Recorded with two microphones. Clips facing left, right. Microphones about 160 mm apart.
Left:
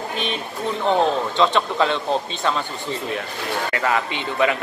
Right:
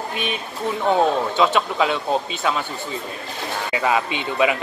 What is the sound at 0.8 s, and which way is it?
Speech, 5° right (ahead or behind).